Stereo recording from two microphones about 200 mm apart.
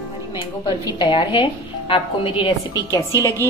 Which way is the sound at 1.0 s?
25° left (ahead or behind).